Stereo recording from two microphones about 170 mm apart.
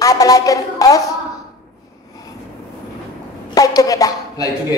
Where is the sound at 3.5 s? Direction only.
20° left (ahead or behind).